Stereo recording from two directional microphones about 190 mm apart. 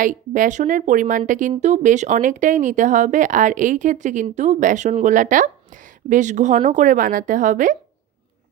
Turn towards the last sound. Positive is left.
turn(degrees=-40)  # may be behind; listen again after turning